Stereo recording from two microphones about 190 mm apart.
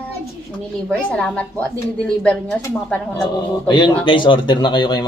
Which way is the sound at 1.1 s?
5° left (ahead or behind).